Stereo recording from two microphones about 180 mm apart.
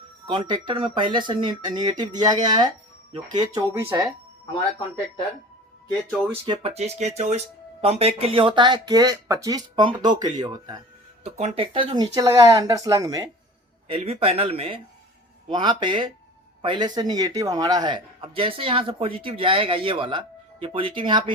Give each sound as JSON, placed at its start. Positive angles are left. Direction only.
{"t": 0.3, "sound": "a man's voice", "side_deg": -25}
{"t": 6.4, "sound": "a man's voice", "side_deg": -30}
{"t": 11.2, "sound": "a man's voice", "side_deg": -35}
{"t": 13.8, "sound": "a man's voice", "side_deg": -35}